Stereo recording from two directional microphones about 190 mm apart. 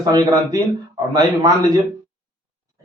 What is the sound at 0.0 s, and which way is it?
Speech, 20° right (ahead or behind).